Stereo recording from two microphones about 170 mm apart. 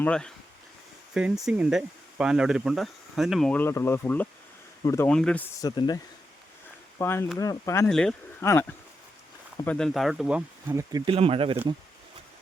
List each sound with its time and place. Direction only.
0.0 s speech: 5° left (ahead or behind)
5.5 s speech: 25° left (ahead or behind)
7.0 s speech: 15° left (ahead or behind)
7.9 s speech: 5° left (ahead or behind)
8.4 s speech: 15° left (ahead or behind)
9.6 s speech: 5° left (ahead or behind)
10.7 s speech: 20° right (ahead or behind)
11.1 s speech: 35° right (ahead or behind)